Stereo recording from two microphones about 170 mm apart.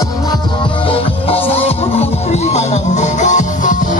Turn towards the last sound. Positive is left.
turn(degrees=45)  # may be behind; listen again after turning